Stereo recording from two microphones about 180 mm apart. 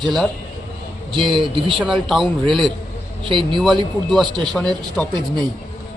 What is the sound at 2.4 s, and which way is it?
A man's voice, 25° right (ahead or behind).